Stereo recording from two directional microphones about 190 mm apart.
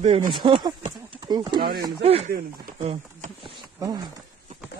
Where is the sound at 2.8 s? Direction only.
30° right (ahead or behind).